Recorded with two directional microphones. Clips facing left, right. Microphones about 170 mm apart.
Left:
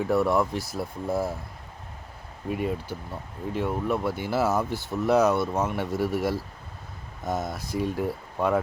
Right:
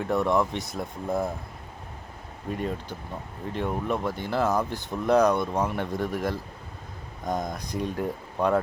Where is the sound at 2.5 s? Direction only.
10° left (ahead or behind).